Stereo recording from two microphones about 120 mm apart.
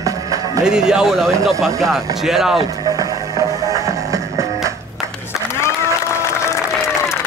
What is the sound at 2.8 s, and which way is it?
Music, 30° right (ahead or behind).